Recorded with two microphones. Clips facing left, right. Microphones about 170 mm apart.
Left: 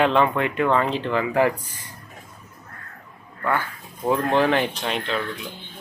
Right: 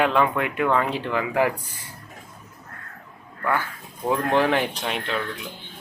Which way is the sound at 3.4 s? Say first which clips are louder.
Left 1 dB; 10° right (ahead or behind).